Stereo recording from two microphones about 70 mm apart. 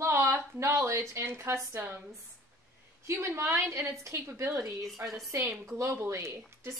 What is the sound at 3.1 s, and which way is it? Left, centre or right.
A woman's voice, right.